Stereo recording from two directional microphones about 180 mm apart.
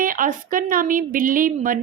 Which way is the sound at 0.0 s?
50° right (ahead or behind).